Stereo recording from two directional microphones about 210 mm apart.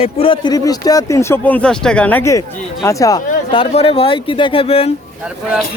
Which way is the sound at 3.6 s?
30° left (ahead or behind).